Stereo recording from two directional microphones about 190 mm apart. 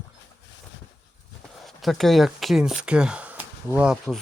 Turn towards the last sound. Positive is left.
turn(degrees=-5)  # may be behind; listen again after turning